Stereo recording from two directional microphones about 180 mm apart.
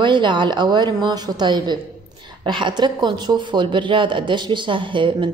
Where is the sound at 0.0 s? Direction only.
25° right (ahead or behind).